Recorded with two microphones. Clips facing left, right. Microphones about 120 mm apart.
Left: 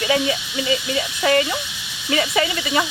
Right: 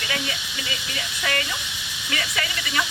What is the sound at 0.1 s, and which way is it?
Speech, 25° left (ahead or behind).